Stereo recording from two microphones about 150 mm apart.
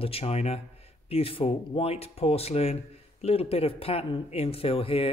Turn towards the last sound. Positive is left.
turn(degrees=40)  # may be behind; listen again after turning